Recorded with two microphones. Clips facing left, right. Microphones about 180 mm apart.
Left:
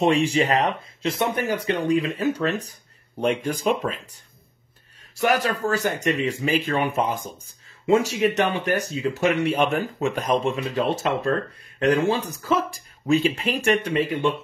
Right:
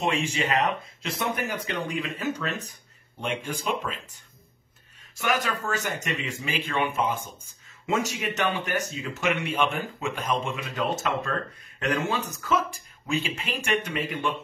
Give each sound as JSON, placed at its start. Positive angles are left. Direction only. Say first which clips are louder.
{"t": 0.0, "sound": "speech", "louder": "left 7 dB", "side_deg": 35}